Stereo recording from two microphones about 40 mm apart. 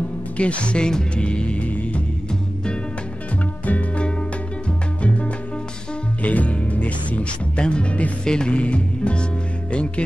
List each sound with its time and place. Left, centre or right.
0.4 s speech: left
0.8 s music: left
5.0 s music: left
7.6 s music: left